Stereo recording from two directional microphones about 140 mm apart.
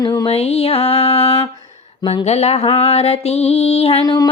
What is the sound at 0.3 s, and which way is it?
Music, 45° left (ahead or behind).